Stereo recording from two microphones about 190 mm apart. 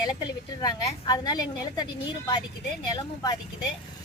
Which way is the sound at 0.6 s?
20° left (ahead or behind).